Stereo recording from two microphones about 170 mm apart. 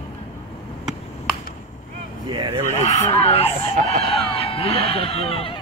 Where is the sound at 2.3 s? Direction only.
30° right (ahead or behind).